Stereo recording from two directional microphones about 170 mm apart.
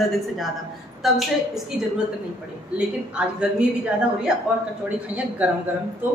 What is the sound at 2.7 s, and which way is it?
Speech, 5° right (ahead or behind).